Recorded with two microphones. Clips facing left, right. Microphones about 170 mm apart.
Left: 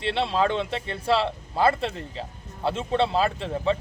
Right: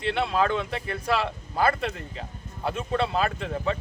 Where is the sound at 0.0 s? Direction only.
30° left (ahead or behind).